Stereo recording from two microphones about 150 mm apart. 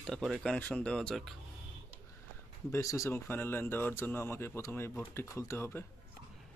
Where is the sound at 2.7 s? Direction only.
20° left (ahead or behind).